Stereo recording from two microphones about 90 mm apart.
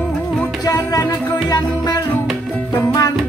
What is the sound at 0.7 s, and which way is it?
Music, 40° left (ahead or behind).